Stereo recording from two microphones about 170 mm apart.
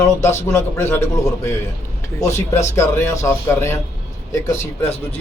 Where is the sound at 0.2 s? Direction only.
15° left (ahead or behind).